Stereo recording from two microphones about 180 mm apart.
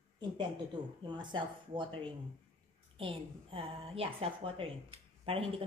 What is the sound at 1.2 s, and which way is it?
A woman's voice, 25° right (ahead or behind).